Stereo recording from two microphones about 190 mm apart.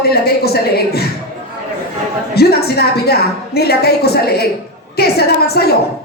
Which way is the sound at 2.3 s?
55° left (ahead or behind).